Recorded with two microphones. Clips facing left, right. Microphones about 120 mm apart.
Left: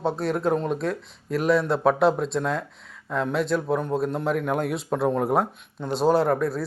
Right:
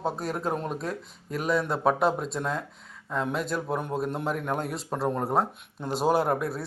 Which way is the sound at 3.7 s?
Centre (ahead or behind).